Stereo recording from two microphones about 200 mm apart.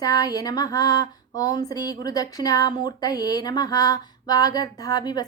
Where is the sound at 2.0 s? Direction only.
20° left (ahead or behind).